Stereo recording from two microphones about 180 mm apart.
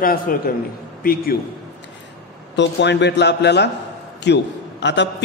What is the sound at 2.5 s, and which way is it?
A man's voice, 75° left (ahead or behind).